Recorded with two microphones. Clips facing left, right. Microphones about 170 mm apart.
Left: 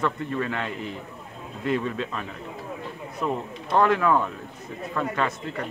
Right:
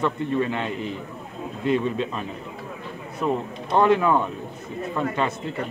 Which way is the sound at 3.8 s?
25° right (ahead or behind).